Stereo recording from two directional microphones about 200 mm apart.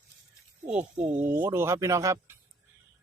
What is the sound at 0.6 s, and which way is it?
Speech, 5° right (ahead or behind).